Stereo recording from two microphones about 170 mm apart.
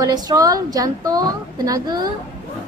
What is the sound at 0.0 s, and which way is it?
A woman's voice, 20° right (ahead or behind).